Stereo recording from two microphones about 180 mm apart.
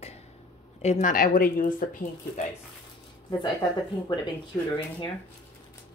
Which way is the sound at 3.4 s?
25° left (ahead or behind).